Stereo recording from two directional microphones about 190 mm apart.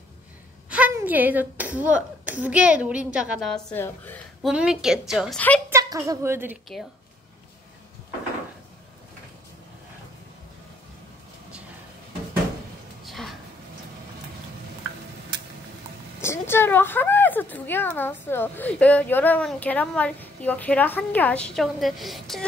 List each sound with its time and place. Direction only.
0.7 s speech: 5° right (ahead or behind); by 4.5 s 10° left (ahead or behind)
4.5 s a woman's voice: 5° right (ahead or behind)
5.7 s a woman's voice: 15° right (ahead or behind)
13.0 s a sound: centre (ahead or behind)
15.3 s a sound: 25° right (ahead or behind)
16.2 s speech: 15° left (ahead or behind)